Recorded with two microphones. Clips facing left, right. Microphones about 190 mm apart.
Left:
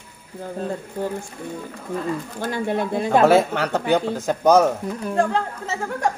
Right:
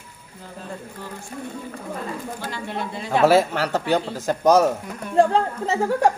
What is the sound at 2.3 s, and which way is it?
Speech, 50° left (ahead or behind).